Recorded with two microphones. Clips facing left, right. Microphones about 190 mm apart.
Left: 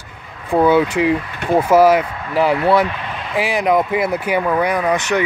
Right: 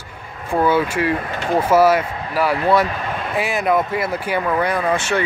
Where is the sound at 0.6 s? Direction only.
20° left (ahead or behind).